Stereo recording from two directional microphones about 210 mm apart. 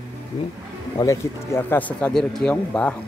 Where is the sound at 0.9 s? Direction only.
15° left (ahead or behind).